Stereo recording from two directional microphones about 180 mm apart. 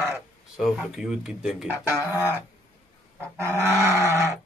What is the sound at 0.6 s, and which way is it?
Speech, centre (ahead or behind).